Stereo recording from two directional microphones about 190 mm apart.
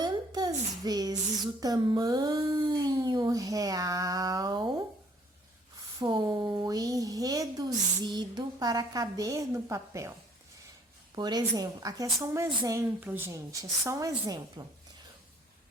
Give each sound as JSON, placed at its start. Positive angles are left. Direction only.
{"t": 0.0, "sound": "a sound", "side_deg": -20}
{"t": 1.6, "sound": "speech", "side_deg": -20}
{"t": 6.0, "sound": "a woman's voice", "side_deg": -25}